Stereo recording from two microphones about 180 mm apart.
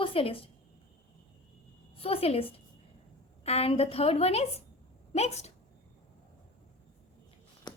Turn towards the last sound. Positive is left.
turn(degrees=25)  # may be behind; listen again after turning